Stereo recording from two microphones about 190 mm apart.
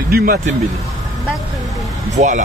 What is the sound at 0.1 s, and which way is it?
Speech, 55° right (ahead or behind).